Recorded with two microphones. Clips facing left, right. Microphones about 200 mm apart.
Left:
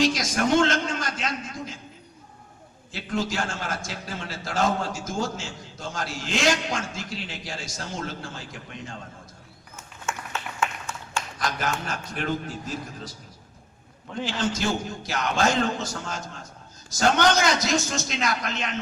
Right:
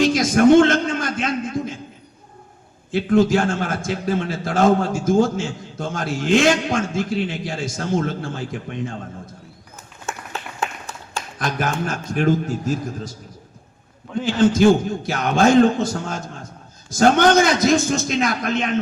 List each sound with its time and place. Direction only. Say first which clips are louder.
0.0 s a man's voice: right 9 dB; 55° right (ahead or behind)
2.9 s a man's voice: right 12 dB; 55° right (ahead or behind)
9.7 s a sound: right 1 dB; 35° right (ahead or behind)
11.3 s a man's voice: right 6 dB; 55° right (ahead or behind)
14.3 s a man's voice: right 13 dB; 55° right (ahead or behind)